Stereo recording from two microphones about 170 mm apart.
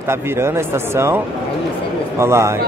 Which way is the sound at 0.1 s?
15° right (ahead or behind).